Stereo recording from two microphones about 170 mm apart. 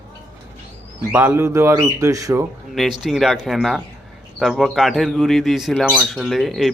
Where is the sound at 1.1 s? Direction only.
10° right (ahead or behind).